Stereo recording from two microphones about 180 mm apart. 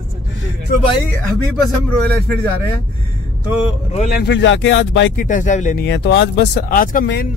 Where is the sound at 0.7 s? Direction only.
50° left (ahead or behind).